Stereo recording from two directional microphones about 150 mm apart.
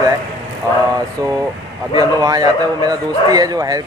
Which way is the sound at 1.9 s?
25° right (ahead or behind).